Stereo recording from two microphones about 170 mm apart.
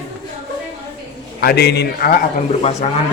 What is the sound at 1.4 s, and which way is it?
Speech, 75° left (ahead or behind).